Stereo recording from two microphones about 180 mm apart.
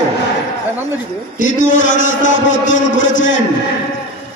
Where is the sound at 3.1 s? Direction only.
90° left.